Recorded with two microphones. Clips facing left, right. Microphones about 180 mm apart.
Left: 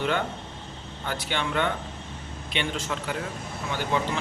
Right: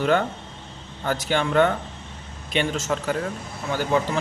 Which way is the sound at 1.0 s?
45° right (ahead or behind).